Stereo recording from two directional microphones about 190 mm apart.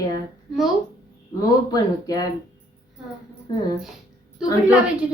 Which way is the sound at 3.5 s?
20° left (ahead or behind).